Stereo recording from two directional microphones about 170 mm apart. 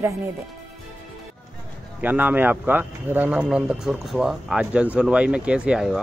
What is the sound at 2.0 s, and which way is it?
A woman's voice, 10° right (ahead or behind).